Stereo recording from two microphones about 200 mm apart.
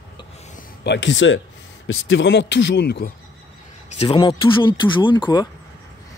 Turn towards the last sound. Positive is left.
turn(degrees=25)  # may be behind; listen again after turning